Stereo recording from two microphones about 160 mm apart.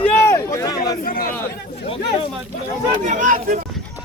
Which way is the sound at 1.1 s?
60° left (ahead or behind).